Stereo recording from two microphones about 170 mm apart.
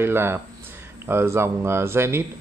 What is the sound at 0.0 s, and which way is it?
Speech, 15° right (ahead or behind).